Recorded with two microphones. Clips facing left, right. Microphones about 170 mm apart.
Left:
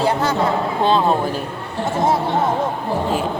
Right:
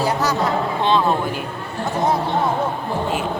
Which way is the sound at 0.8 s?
35° left (ahead or behind).